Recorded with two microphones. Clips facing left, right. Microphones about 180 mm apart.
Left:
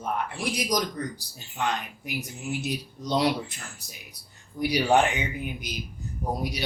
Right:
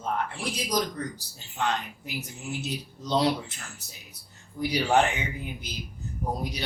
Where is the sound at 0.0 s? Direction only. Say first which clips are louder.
Left 1 dB; 15° left (ahead or behind).